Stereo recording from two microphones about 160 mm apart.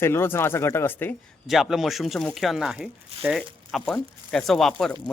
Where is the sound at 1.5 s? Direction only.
Centre (ahead or behind).